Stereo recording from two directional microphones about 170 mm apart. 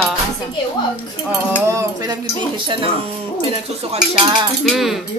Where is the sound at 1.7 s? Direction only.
20° right (ahead or behind).